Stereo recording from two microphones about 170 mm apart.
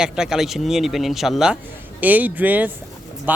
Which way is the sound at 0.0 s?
5° right (ahead or behind).